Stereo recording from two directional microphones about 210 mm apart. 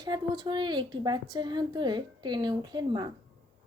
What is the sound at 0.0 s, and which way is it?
A woman's voice, 20° right (ahead or behind).